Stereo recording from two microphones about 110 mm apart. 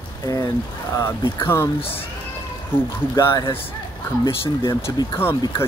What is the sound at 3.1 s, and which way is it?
Speech, 35° left (ahead or behind).